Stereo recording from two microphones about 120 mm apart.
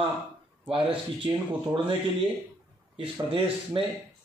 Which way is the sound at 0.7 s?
45° right (ahead or behind).